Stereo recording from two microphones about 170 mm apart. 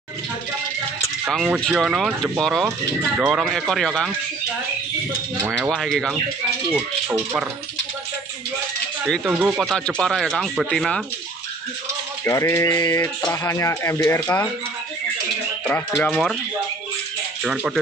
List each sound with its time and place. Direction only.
1.3 s speech: centre (ahead or behind)
5.5 s speech: 5° right (ahead or behind)
9.0 s speech: 5° right (ahead or behind)
12.3 s speech: 15° left (ahead or behind)
15.6 s speech: 10° left (ahead or behind)
17.4 s speech: 5° right (ahead or behind)